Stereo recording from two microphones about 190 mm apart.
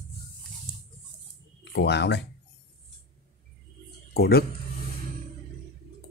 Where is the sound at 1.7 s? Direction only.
65° left (ahead or behind).